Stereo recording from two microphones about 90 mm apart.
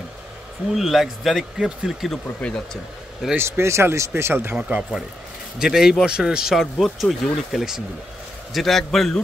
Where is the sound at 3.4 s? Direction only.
30° right (ahead or behind).